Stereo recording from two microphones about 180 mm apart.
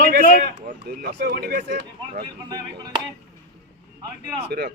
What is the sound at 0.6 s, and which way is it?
Speech, 60° right (ahead or behind).